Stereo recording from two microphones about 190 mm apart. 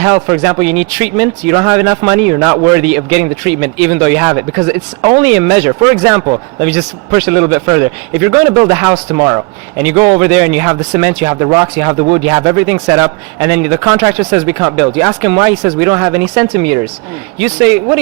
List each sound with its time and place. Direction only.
0.0 s speech: 15° right (ahead or behind)
14.2 s speech: 20° right (ahead or behind)